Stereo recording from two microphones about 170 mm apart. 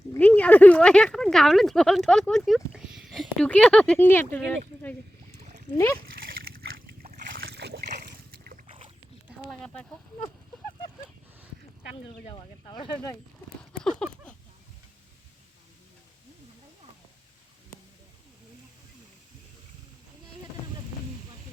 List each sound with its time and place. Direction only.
0.1 s speech: 10° left (ahead or behind)
5.4 s a sound: 45° right (ahead or behind)
5.7 s a child's voice: 15° left (ahead or behind)
6.2 s splash: 60° right (ahead or behind)
8.6 s boat: 35° right (ahead or behind)
12.3 s speech: 25° left (ahead or behind)
14.0 s a sound: 5° left (ahead or behind)